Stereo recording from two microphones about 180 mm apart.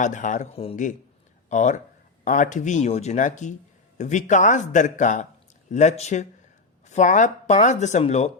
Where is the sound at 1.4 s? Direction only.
40° left (ahead or behind).